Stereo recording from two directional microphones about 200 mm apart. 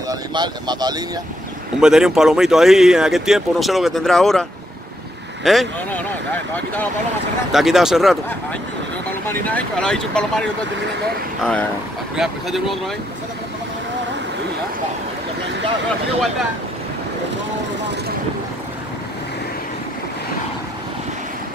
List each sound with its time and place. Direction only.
0.1 s speech: 20° right (ahead or behind)
1.8 s speech: 5° right (ahead or behind)
7.5 s speech: centre (ahead or behind)
9.3 s speech: 5° left (ahead or behind)
12.2 s speech: centre (ahead or behind)